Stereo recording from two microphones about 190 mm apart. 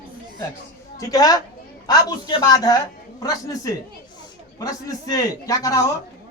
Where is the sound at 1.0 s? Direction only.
20° left (ahead or behind).